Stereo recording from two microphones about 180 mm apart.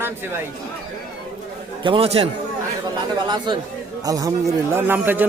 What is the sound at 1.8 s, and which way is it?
Speech, 30° right (ahead or behind).